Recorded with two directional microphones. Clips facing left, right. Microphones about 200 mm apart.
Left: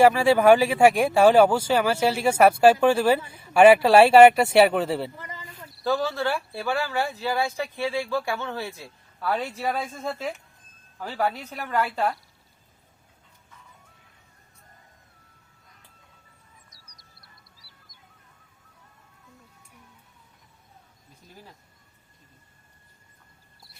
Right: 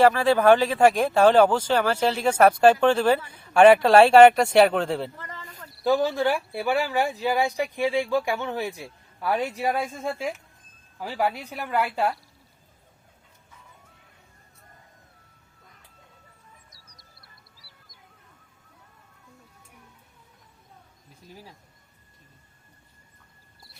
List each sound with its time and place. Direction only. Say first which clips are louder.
0.0 s speech: left 1 dB; 10° left (ahead or behind)
5.5 s a sound: left 1 dB; centre (ahead or behind)
5.8 s speech: right 3 dB; 15° right (ahead or behind)
16.6 s music: right 2 dB; centre (ahead or behind)
17.7 s bird: right 1 dB; centre (ahead or behind)